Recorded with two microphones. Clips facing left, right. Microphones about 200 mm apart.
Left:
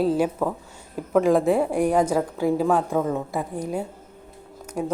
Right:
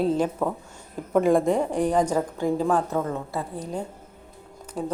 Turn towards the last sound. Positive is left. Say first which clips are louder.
# left 2 dB
turn(degrees=10)  # may be behind; listen again after turning